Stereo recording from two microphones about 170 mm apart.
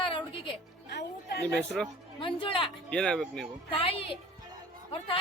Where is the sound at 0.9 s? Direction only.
75° left (ahead or behind).